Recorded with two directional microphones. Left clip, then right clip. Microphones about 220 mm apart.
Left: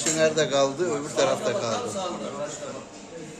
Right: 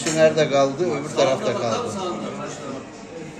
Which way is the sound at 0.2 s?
5° left (ahead or behind).